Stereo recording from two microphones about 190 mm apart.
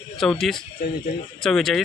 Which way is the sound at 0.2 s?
Centre (ahead or behind).